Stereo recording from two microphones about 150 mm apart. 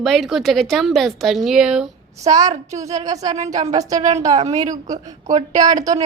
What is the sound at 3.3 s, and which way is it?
A woman's voice, 50° right (ahead or behind).